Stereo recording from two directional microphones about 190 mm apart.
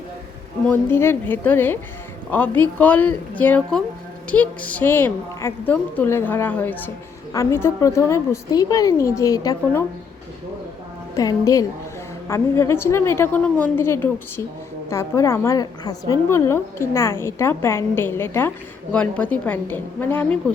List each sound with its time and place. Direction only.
0.7 s a woman's voice: 10° left (ahead or behind)
11.1 s a woman's voice: 20° left (ahead or behind)